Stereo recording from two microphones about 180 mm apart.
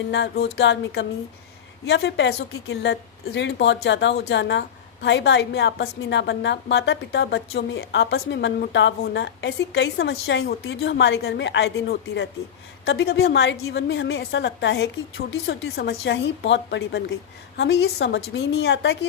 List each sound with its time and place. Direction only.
0.1 s a woman's voice: 65° left (ahead or behind)
15.3 s a woman's voice: 65° left (ahead or behind)